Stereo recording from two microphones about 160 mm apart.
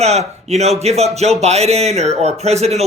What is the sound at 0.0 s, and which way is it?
Speech, 40° right (ahead or behind).